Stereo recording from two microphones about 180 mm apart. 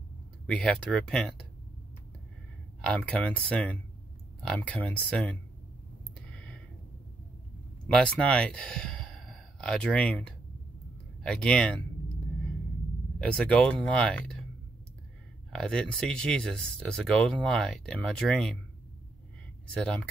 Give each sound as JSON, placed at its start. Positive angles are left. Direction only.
{"t": 0.5, "sound": "speech", "side_deg": 5}
{"t": 2.8, "sound": "speech", "side_deg": 5}
{"t": 7.9, "sound": "speech", "side_deg": 5}
{"t": 13.2, "sound": "speech", "side_deg": 5}
{"t": 15.5, "sound": "speech", "side_deg": 5}
{"t": 19.7, "sound": "speech", "side_deg": 5}